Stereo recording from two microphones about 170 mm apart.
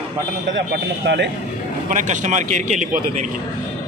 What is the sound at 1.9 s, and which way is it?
Speech, 50° right (ahead or behind).